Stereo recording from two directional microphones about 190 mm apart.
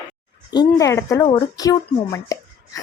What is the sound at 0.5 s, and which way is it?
A woman's voice, 20° left (ahead or behind).